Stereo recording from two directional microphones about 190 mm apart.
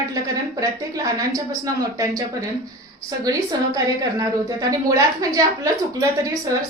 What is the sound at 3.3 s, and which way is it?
A woman's voice, 20° right (ahead or behind).